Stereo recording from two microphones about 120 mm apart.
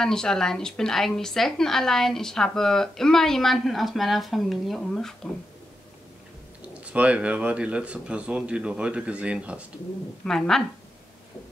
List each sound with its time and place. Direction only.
0.0 s a woman's voice: 5° left (ahead or behind)
6.6 s speech: 10° right (ahead or behind)
10.2 s a woman's voice: 5° left (ahead or behind)